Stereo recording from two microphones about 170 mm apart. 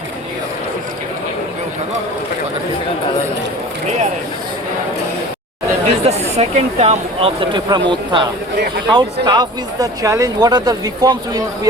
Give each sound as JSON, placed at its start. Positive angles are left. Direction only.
{"t": 5.8, "sound": "speech", "side_deg": -40}